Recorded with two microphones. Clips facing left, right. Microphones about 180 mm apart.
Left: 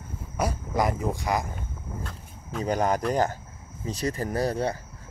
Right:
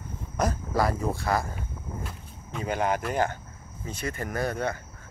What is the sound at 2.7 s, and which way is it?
Speech, 40° left (ahead or behind).